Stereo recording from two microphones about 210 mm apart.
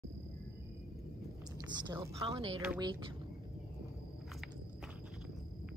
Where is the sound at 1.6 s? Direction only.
20° right (ahead or behind).